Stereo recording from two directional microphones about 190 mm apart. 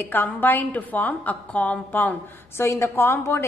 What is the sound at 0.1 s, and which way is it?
A woman's voice, 10° left (ahead or behind).